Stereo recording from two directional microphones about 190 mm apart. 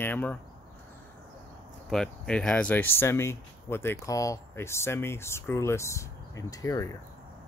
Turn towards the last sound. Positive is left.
turn(degrees=20)  # may be behind; listen again after turning